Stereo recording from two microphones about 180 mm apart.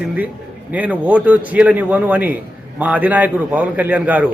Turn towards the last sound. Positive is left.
turn(degrees=-10)  # may be behind; listen again after turning